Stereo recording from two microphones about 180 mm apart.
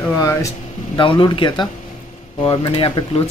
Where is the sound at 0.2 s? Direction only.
15° left (ahead or behind).